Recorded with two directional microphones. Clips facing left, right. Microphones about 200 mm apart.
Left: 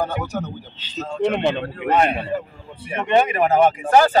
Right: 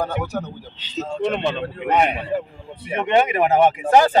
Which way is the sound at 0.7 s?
20° right (ahead or behind).